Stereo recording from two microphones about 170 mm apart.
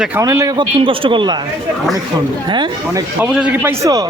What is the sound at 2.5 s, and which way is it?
Speech, 25° right (ahead or behind).